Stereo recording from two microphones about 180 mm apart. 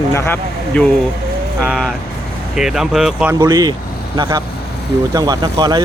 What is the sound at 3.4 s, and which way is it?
Speech, 20° right (ahead or behind).